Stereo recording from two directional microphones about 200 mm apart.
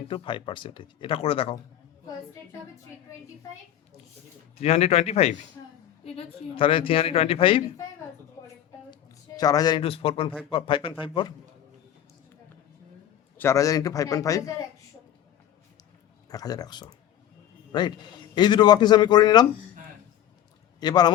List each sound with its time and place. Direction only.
0.1 s speech: 25° left (ahead or behind)
4.5 s speech: 30° left (ahead or behind)
8.9 s speech: 20° left (ahead or behind)
13.3 s a man's voice: 15° left (ahead or behind)
16.3 s a man's voice: 20° left (ahead or behind)
20.7 s speech: 20° left (ahead or behind)